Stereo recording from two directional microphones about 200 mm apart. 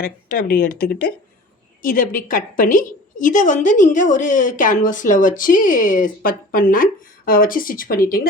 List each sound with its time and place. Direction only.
0.0 s a woman's voice: 45° left (ahead or behind)